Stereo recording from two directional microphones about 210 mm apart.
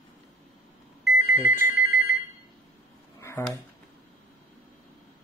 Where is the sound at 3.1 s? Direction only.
15° left (ahead or behind).